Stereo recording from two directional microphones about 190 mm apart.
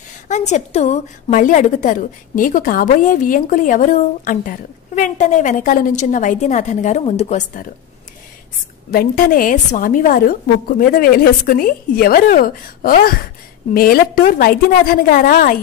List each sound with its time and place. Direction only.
0.3 s a woman's voice: 40° left (ahead or behind)
8.9 s a woman's voice: 50° left (ahead or behind)